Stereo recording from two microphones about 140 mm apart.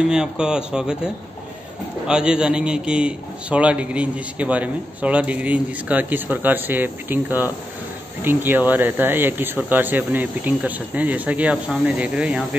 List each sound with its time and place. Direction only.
0.1 s speech: 5° right (ahead or behind)
2.0 s a man's voice: 5° right (ahead or behind)